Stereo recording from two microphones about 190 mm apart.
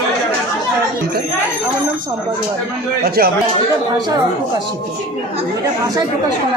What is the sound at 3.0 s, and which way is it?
Speech, 55° right (ahead or behind).